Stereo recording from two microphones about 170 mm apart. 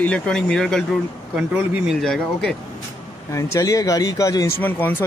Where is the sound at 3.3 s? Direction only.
15° left (ahead or behind).